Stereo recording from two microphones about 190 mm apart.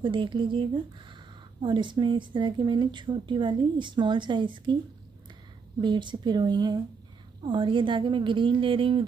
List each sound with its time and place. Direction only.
0.0 s a woman's voice: 25° right (ahead or behind)
5.8 s a woman's voice: 25° right (ahead or behind)